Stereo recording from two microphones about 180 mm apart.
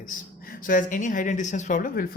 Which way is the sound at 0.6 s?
50° left (ahead or behind).